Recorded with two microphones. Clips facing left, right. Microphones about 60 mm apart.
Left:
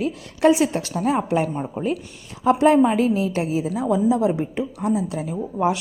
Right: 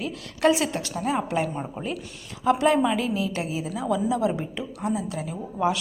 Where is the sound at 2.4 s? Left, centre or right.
Left.